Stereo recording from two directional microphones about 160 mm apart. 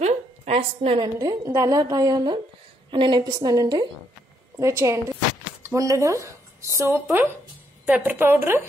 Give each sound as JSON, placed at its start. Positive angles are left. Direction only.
{"t": 0.0, "sound": "a woman's voice", "side_deg": -40}